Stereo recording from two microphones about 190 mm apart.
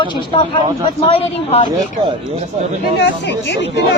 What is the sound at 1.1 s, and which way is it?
Speech, 30° left (ahead or behind).